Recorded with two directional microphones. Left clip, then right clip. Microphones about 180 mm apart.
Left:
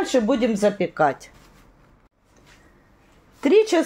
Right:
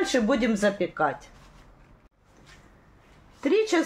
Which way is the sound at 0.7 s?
50° left (ahead or behind).